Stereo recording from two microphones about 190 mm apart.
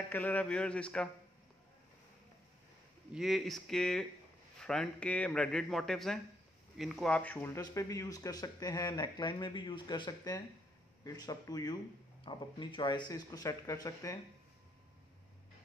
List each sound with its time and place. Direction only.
0.1 s speech: 10° left (ahead or behind)
3.1 s speech: centre (ahead or behind); by 14.1 s 15° left (ahead or behind)